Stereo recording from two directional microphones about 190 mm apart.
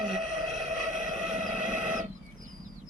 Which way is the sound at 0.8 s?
40° right (ahead or behind).